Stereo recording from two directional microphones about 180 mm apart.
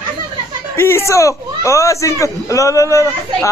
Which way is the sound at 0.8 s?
15° left (ahead or behind).